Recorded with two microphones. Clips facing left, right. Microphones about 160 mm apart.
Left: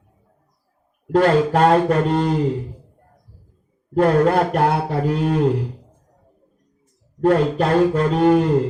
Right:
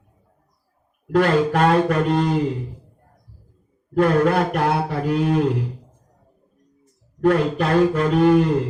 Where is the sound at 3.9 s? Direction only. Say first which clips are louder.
Left 2 dB; 30° left (ahead or behind).